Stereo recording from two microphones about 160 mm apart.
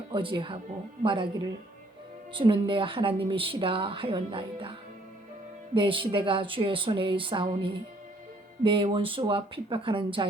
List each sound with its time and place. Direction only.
0.1 s a woman's voice: 30° right (ahead or behind)
5.7 s a woman's voice: 30° right (ahead or behind)